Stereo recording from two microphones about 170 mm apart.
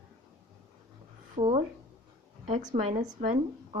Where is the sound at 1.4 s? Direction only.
40° right (ahead or behind).